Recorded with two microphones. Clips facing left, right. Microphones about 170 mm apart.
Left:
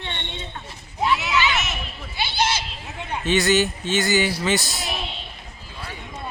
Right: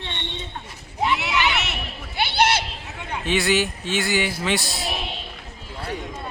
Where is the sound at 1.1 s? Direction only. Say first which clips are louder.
Left 2 dB; 65° right (ahead or behind).